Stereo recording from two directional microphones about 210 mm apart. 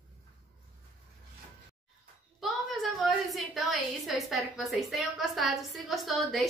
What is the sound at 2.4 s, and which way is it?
A woman's voice, centre (ahead or behind).